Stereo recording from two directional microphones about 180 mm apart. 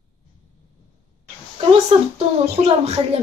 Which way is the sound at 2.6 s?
35° right (ahead or behind).